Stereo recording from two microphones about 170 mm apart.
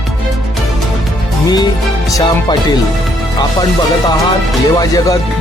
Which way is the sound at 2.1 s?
25° left (ahead or behind).